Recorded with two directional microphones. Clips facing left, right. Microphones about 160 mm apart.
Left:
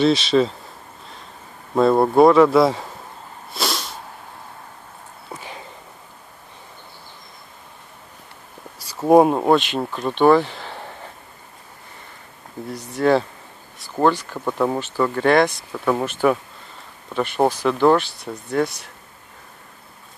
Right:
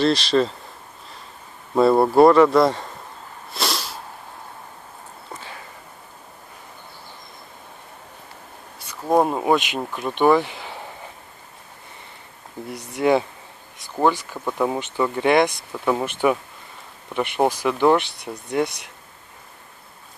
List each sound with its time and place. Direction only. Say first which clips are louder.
0.0 s speech: left 2 dB; centre (ahead or behind)
1.8 s speech: even; 5° right (ahead or behind)
3.5 s a sound: left 1 dB; centre (ahead or behind)
5.3 s a sound: left 3 dB; 20° left (ahead or behind)
9.0 s speech: left 6 dB; 10° left (ahead or behind)
9.3 s speech: left 3 dB; centre (ahead or behind)
12.7 s speech: left 1 dB; 15° right (ahead or behind)
17.4 s speech: left 2 dB; 10° right (ahead or behind)